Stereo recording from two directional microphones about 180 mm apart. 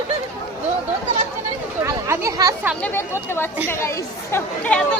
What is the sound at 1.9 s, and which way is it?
Speech, 15° right (ahead or behind).